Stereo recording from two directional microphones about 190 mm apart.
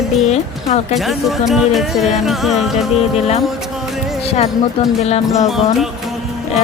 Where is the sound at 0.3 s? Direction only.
35° left (ahead or behind).